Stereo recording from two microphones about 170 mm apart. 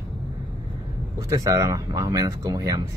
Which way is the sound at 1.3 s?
20° right (ahead or behind).